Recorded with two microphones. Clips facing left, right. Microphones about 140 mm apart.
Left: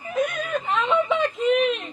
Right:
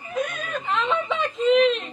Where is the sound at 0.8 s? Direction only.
15° left (ahead or behind).